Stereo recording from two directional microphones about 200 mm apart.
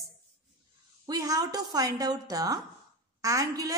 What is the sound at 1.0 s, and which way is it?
A woman's voice, 20° right (ahead or behind).